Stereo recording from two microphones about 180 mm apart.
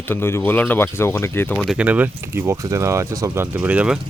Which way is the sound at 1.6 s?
5° right (ahead or behind).